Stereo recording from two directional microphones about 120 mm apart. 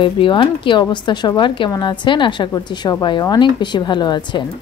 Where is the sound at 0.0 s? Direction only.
40° left (ahead or behind).